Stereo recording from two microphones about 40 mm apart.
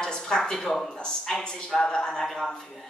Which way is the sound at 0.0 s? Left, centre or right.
Centre.